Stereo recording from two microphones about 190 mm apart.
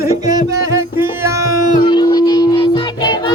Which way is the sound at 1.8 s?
25° left (ahead or behind).